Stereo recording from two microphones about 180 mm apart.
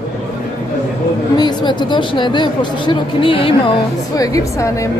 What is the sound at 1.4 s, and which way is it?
Speech, 25° left (ahead or behind).